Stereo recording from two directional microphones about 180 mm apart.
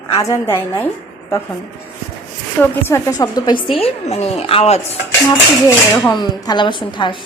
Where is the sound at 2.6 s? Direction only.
10° left (ahead or behind); by 4.8 s 35° left (ahead or behind).